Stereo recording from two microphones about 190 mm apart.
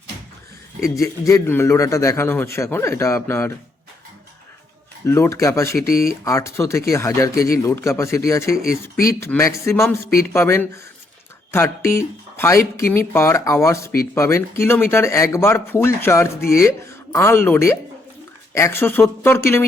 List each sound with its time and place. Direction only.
0.9 s a man's voice: 15° left (ahead or behind)
5.0 s a man's voice: 15° left (ahead or behind)